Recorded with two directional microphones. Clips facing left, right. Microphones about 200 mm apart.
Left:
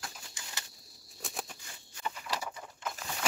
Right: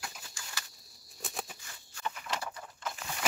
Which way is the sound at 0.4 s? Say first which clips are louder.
Right 1 dB; 20° left (ahead or behind).